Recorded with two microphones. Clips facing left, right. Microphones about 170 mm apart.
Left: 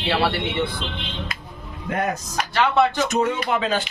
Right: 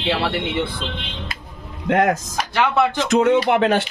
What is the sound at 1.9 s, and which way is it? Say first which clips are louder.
Speech: right 7 dB; 90° right.